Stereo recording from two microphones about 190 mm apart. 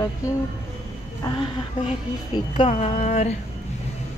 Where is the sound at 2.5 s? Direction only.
35° left (ahead or behind).